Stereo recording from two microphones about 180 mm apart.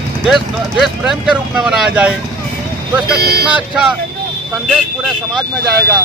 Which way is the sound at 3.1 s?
60° right (ahead or behind).